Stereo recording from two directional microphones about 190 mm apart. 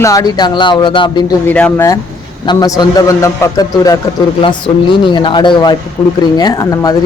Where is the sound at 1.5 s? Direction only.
10° left (ahead or behind).